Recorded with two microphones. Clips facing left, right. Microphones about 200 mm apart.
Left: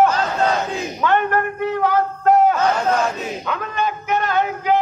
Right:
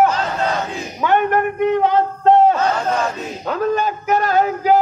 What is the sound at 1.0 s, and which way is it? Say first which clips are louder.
A man's voice: right 3 dB; 15° right (ahead or behind).